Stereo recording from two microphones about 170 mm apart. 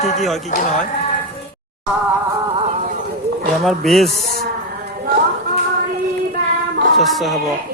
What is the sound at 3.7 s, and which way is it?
Speech, centre (ahead or behind).